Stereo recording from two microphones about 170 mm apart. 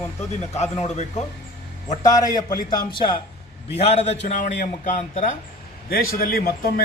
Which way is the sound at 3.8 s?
40° left (ahead or behind).